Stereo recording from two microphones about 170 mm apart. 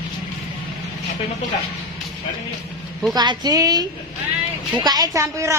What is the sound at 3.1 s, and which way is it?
A woman's voice, 25° right (ahead or behind).